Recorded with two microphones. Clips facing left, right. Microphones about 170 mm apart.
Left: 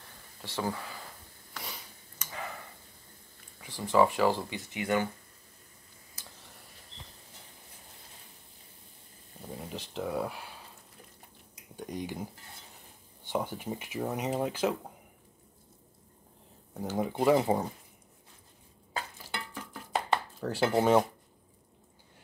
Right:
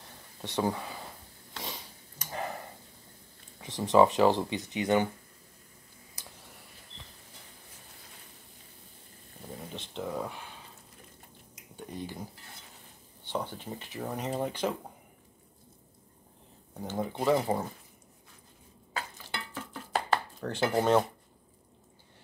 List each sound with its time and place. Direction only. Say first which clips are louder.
0.4 s a sound: right 4 dB; 20° right (ahead or behind)
2.3 s a sound: right 5 dB; 40° right (ahead or behind)
3.6 s speech: right 3 dB; 20° right (ahead or behind)
9.7 s speech: left 2 dB; 5° left (ahead or behind)
11.9 s speech: left 3 dB; 15° left (ahead or behind)
13.3 s speech: left 2 dB; 10° left (ahead or behind)
16.7 s speech: left 2 dB; 10° left (ahead or behind)
19.5 s a sound: right 1 dB; 15° left (ahead or behind)
20.3 s speech: left 3 dB; 5° left (ahead or behind)